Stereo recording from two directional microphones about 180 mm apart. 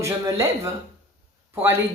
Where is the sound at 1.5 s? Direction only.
15° right (ahead or behind).